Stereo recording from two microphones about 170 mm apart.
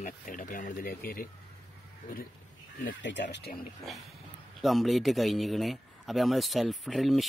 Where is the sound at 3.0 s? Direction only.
90° left.